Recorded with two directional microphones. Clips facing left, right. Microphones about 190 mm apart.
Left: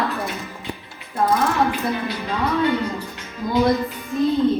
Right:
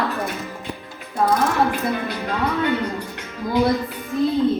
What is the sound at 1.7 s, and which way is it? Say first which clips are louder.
Speech: even; 50° right (ahead or behind).